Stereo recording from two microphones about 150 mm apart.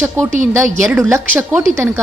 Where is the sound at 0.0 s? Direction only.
15° right (ahead or behind).